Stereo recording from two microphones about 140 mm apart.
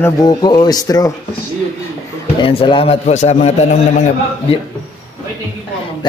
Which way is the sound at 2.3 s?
35° left (ahead or behind).